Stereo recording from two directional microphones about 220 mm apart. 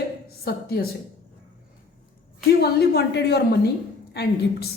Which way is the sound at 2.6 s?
50° left (ahead or behind).